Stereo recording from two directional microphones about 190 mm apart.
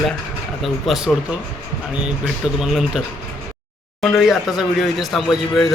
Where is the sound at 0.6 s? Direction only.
Centre (ahead or behind).